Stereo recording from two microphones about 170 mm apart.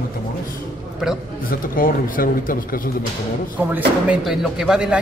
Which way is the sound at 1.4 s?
55° left (ahead or behind).